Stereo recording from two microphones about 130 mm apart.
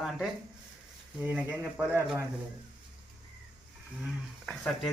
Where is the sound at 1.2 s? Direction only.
10° right (ahead or behind).